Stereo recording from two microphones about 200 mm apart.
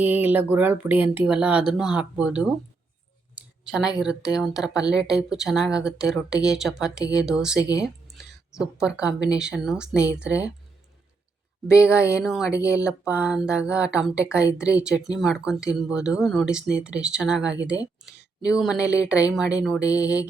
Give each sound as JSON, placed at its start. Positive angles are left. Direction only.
{"t": 0.0, "sound": "speech", "side_deg": -10}
{"t": 3.3, "sound": "clicking", "side_deg": -5}
{"t": 4.0, "sound": "speech", "side_deg": -5}
{"t": 4.8, "sound": "speech", "side_deg": 20}
{"t": 5.0, "sound": "speech", "side_deg": -5}
{"t": 7.6, "sound": "speech", "side_deg": 15}
{"t": 8.5, "sound": "speech", "side_deg": -5}
{"t": 11.9, "sound": "speech", "side_deg": 15}
{"t": 12.2, "sound": "speech", "side_deg": 0}
{"t": 12.5, "sound": "speech", "side_deg": 15}
{"t": 12.8, "sound": "speech", "side_deg": -5}